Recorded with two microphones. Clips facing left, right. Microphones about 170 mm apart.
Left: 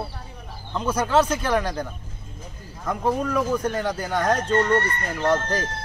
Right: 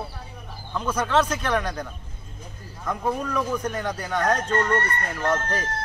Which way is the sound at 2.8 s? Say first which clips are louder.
Left 3 dB; 10° left (ahead or behind).